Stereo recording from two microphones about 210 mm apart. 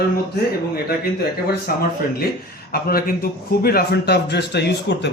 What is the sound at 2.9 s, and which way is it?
A man's voice, 45° left (ahead or behind).